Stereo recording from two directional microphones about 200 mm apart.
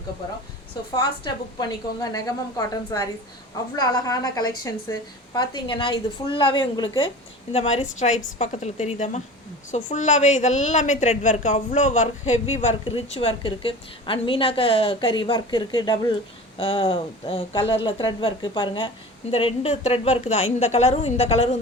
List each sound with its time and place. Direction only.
0.9 s a woman's voice: 20° left (ahead or behind)